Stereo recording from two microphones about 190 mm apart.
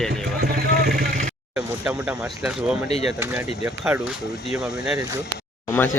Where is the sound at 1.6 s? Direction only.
5° right (ahead or behind).